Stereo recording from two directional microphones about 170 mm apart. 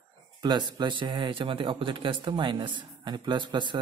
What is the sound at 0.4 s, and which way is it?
Speech, 25° right (ahead or behind).